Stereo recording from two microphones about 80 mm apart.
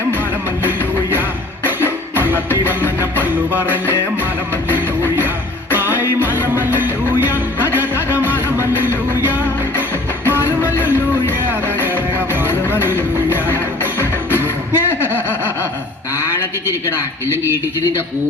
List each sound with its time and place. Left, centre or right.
3.0 s music: right
5.7 s music: right
12.5 s music: left
14.7 s a sound: right
17.2 s speech: right